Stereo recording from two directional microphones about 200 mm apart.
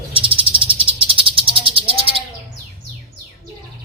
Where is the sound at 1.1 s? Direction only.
25° right (ahead or behind).